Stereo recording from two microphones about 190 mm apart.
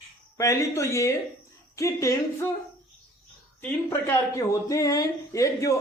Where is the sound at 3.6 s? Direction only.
10° left (ahead or behind).